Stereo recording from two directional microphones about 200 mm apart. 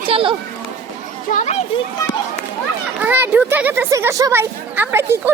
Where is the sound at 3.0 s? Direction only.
10° right (ahead or behind).